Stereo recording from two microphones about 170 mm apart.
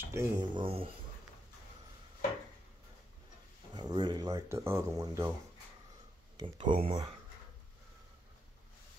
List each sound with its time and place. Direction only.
0.0 s a sound: 15° right (ahead or behind)
0.6 s speech: 35° right (ahead or behind)
3.7 s speech: 25° right (ahead or behind)
6.4 s speech: 30° right (ahead or behind)